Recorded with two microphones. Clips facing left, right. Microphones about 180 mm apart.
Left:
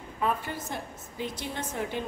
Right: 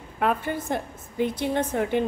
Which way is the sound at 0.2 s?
55° right (ahead or behind).